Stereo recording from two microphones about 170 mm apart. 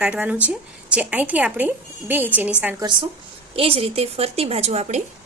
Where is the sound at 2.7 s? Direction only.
25° right (ahead or behind).